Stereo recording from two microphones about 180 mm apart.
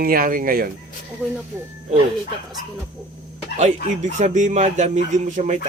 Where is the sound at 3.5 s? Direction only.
40° right (ahead or behind).